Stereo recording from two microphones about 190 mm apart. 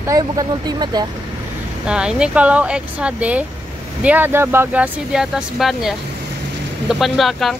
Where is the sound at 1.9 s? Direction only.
5° right (ahead or behind).